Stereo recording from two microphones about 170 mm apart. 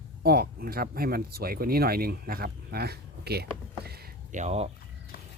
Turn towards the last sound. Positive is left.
turn(degrees=-40)  # may be behind; listen again after turning